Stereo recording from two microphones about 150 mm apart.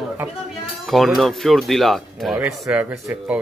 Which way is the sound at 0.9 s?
Centre (ahead or behind).